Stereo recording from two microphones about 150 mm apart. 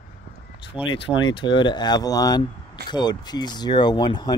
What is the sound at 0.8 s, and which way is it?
Speech, 35° left (ahead or behind).